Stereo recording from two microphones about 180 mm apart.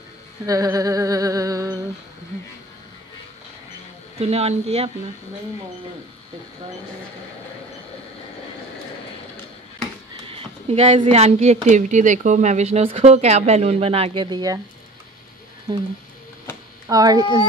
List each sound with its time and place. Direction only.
0.5 s humming: 20° right (ahead or behind)
4.2 s speech: 35° right (ahead or behind)
10.1 s speech: 30° right (ahead or behind)
16.8 s humming: 20° right (ahead or behind)